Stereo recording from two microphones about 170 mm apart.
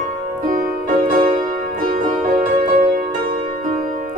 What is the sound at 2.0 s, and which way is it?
Music, 45° right (ahead or behind).